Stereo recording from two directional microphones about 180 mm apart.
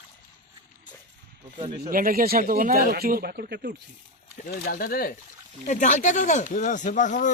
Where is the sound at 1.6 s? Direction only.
30° right (ahead or behind).